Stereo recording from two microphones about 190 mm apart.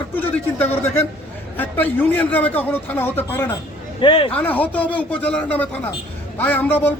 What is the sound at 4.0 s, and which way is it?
Speech, 25° left (ahead or behind).